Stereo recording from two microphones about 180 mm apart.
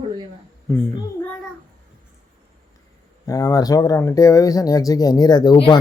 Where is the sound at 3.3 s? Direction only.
20° left (ahead or behind).